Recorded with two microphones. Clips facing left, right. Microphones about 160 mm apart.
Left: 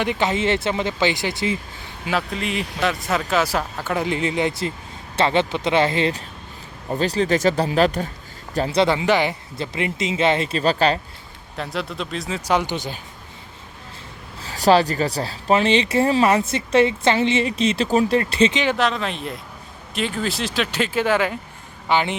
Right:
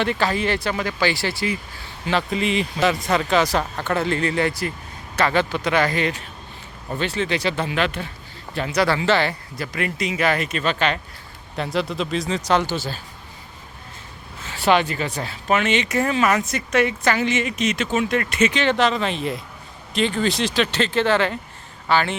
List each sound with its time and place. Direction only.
0.0 s speech: 15° left (ahead or behind)
2.0 s speech: centre (ahead or behind); by 11.0 s 35° left (ahead or behind)
11.5 s speech: centre (ahead or behind)
12.5 s speech: 15° left (ahead or behind)
14.4 s speech: 35° left (ahead or behind)
18.5 s speech: 10° left (ahead or behind)
18.8 s speech: centre (ahead or behind); by 22.1 s 15° left (ahead or behind)